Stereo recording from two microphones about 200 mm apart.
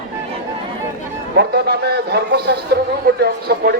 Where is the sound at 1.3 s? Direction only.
55° right (ahead or behind).